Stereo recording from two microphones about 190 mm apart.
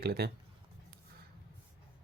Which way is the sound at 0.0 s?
55° right (ahead or behind).